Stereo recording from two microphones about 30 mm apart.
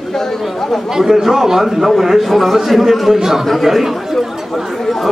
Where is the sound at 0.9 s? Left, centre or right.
Centre.